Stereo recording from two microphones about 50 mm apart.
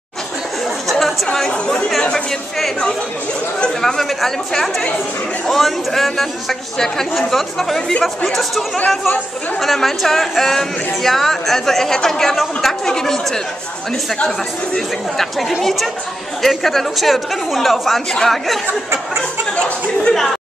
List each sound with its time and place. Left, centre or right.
1.2 s speech: centre
3.8 s speech: centre
15.1 s speech: centre
19.5 s speech: centre